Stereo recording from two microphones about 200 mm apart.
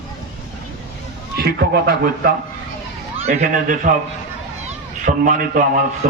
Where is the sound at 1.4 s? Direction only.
50° right (ahead or behind).